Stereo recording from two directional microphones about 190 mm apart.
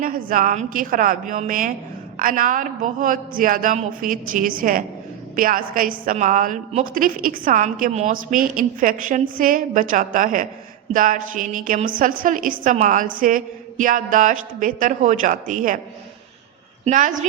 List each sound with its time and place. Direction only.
0.0 s a woman's voice: 50° right (ahead or behind)
16.8 s a woman's voice: 45° right (ahead or behind)